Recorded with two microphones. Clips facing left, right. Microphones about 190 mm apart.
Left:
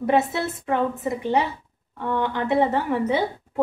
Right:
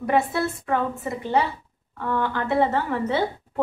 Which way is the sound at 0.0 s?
20° left (ahead or behind).